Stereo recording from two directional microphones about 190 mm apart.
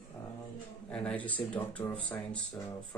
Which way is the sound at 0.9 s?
5° left (ahead or behind).